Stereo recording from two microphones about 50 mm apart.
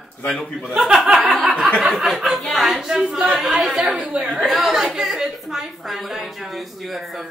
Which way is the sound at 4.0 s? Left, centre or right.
Centre.